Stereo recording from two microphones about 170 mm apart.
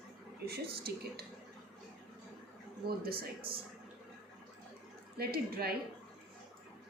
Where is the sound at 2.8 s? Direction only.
65° right (ahead or behind).